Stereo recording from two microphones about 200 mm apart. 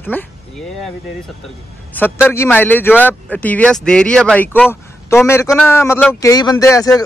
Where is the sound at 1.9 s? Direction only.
10° left (ahead or behind).